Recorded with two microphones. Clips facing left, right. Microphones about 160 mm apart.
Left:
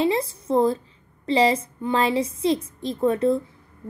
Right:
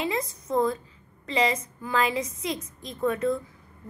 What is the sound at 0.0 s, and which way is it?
A woman's voice, 30° left (ahead or behind).